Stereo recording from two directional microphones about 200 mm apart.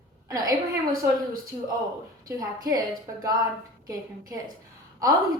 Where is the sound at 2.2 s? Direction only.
15° right (ahead or behind).